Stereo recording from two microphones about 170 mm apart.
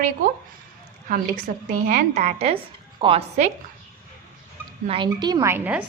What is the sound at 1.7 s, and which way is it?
A woman's voice, 55° right (ahead or behind).